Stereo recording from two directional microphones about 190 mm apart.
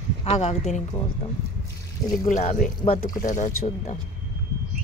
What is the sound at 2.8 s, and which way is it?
Speech, 20° left (ahead or behind).